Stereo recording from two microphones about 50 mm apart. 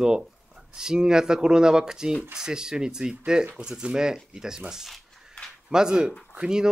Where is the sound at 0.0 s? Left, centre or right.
Centre.